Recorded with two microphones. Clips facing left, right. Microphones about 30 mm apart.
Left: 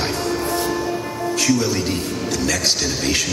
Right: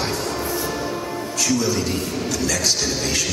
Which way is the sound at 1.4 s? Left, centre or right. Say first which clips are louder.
Left 1 dB; left.